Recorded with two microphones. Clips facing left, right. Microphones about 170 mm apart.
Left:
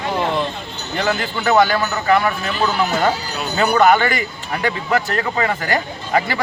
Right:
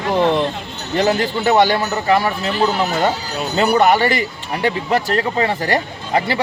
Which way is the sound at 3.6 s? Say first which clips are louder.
Even; 30° right (ahead or behind).